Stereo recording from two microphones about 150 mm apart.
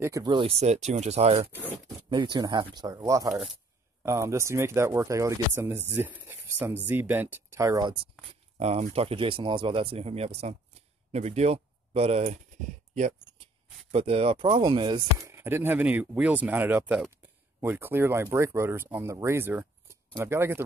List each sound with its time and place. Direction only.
0.0 s speech: 25° right (ahead or behind)
0.5 s speech: 45° right (ahead or behind)
2.0 s speech: 30° right (ahead or behind)
8.5 s speech: 45° right (ahead or behind)
13.9 s speech: 40° right (ahead or behind)
15.1 s speech: 15° right (ahead or behind)